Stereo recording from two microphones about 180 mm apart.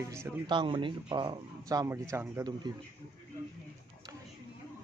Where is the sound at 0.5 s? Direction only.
25° right (ahead or behind).